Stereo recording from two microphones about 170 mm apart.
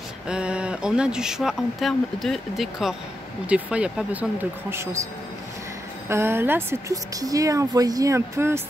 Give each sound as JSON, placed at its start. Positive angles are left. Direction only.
{"t": 0.3, "sound": "speech", "side_deg": -5}
{"t": 6.0, "sound": "speech", "side_deg": -15}